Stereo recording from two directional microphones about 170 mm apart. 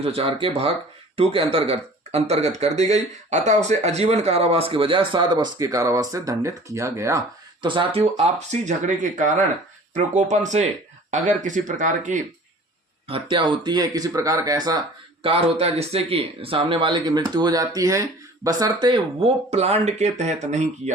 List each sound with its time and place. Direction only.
0.0 s speech: 35° right (ahead or behind); by 7.2 s 15° right (ahead or behind)
7.6 s speech: 30° right (ahead or behind); by 12.2 s 50° right (ahead or behind)
13.1 s speech: 30° right (ahead or behind)
15.2 s speech: 35° right (ahead or behind)